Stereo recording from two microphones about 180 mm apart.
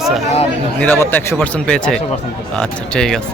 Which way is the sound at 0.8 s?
10° left (ahead or behind).